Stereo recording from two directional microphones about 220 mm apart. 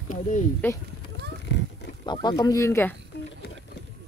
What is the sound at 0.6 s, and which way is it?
Speech, 10° left (ahead or behind).